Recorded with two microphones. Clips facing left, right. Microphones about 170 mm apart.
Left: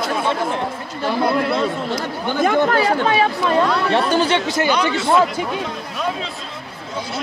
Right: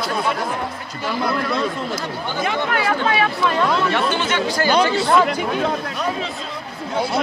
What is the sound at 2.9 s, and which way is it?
Speech, 35° left (ahead or behind).